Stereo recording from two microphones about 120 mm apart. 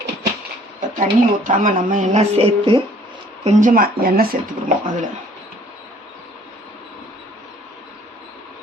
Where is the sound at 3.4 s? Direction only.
80° right.